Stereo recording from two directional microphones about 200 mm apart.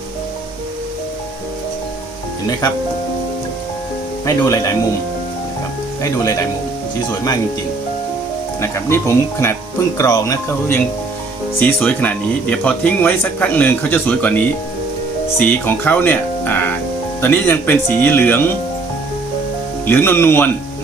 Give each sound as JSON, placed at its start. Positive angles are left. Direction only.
{"t": 4.3, "sound": "speech", "side_deg": 15}
{"t": 6.0, "sound": "speech", "side_deg": 15}
{"t": 8.6, "sound": "speech", "side_deg": 15}
{"t": 19.8, "sound": "speech", "side_deg": 10}